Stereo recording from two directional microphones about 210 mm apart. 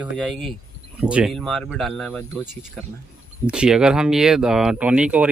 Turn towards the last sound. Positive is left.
turn(degrees=-5)  # may be behind; listen again after turning